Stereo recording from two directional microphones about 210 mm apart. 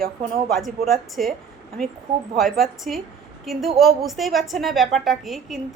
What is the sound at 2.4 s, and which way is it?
A woman's voice, centre (ahead or behind).